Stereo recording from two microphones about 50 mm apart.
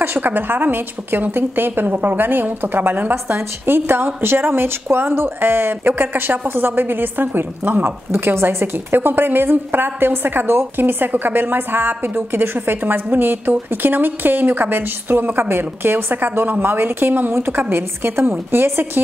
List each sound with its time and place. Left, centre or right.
0.0 s a woman's voice: right